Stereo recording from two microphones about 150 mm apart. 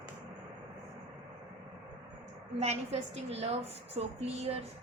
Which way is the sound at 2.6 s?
45° right (ahead or behind).